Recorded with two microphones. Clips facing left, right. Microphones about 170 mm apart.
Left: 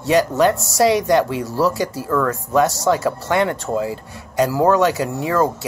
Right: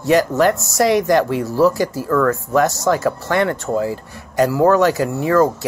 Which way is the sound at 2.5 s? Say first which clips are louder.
Left 2 dB; 20° left (ahead or behind).